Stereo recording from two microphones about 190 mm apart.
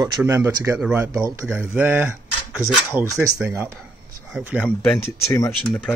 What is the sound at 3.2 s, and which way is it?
Speech, 15° right (ahead or behind).